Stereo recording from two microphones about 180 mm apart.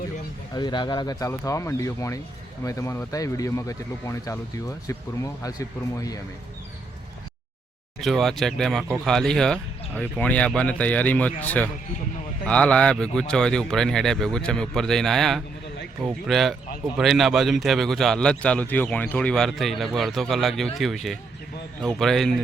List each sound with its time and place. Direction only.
0.5 s speech: 25° left (ahead or behind)
8.0 s a man's voice: centre (ahead or behind)